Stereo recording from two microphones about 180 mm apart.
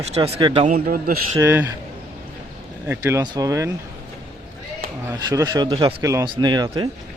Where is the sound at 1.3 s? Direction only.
15° right (ahead or behind).